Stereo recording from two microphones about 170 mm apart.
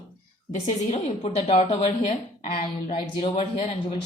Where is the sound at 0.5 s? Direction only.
45° left (ahead or behind).